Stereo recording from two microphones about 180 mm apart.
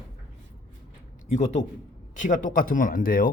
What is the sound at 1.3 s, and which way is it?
A man's voice, 40° left (ahead or behind).